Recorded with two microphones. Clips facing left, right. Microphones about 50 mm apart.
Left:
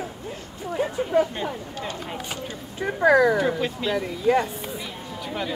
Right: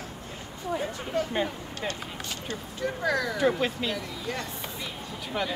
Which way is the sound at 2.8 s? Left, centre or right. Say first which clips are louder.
Left 10 dB; left.